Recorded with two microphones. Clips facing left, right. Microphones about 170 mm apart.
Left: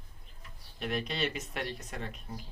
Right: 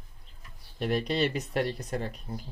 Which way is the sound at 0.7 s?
40° right (ahead or behind).